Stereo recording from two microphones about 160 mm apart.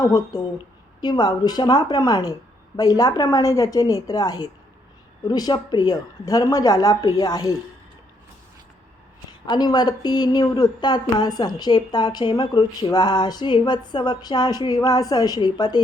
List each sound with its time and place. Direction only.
0.0 s a woman's voice: 25° left (ahead or behind)
9.5 s a woman's voice: 25° left (ahead or behind)